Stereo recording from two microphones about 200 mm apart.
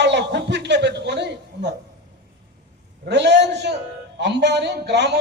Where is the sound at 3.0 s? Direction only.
60° right (ahead or behind).